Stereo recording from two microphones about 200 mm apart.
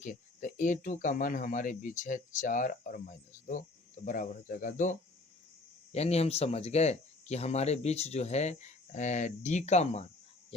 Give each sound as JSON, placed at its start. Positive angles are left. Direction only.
{"t": 0.0, "sound": "speech", "side_deg": 40}